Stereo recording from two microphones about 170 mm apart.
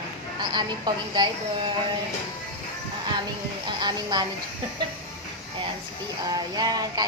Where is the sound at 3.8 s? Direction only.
25° right (ahead or behind).